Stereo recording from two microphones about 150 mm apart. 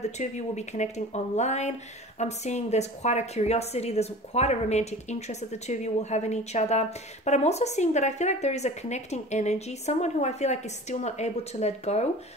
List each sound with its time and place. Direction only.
0.0 s a woman's voice: 50° left (ahead or behind)